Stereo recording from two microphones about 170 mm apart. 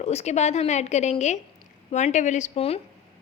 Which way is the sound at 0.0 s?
40° left (ahead or behind).